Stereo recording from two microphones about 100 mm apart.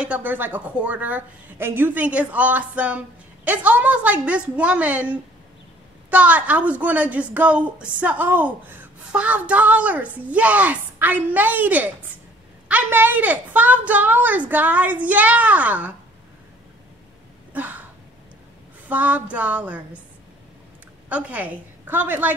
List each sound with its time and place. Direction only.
0.0 s a woman's voice: 15° right (ahead or behind)
17.5 s throat clearing: 15° right (ahead or behind)
18.9 s a woman's voice: 15° right (ahead or behind)
21.1 s a woman's voice: 15° right (ahead or behind)